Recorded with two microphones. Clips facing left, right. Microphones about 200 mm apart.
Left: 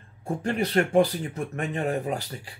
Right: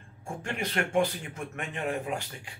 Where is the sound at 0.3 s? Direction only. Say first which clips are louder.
Left 8 dB; 35° left (ahead or behind).